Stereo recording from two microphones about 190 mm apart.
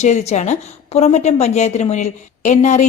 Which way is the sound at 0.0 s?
35° left (ahead or behind).